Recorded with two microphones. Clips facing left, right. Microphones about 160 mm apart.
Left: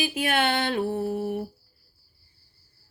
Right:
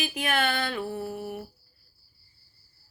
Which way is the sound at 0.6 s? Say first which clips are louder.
Left 5 dB; 55° left (ahead or behind).